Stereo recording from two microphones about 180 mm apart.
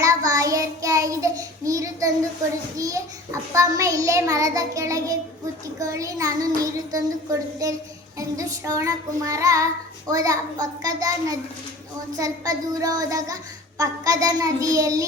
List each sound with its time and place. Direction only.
0.0 s child singing: 20° right (ahead or behind)